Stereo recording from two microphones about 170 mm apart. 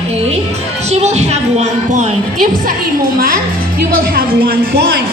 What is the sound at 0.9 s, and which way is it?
Music, 40° right (ahead or behind).